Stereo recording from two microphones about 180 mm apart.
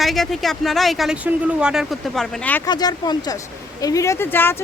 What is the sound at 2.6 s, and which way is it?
Speech, 20° left (ahead or behind).